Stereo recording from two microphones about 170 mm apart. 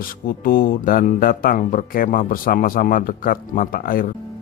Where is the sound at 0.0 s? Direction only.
60° left (ahead or behind).